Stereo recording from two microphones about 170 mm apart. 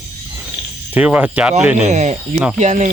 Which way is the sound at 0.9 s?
10° right (ahead or behind).